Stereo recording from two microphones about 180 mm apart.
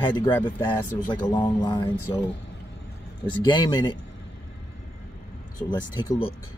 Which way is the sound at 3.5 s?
25° left (ahead or behind).